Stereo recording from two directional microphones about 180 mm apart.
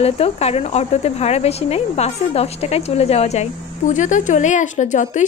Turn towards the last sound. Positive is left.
turn(degrees=45)  # may be behind; listen again after turning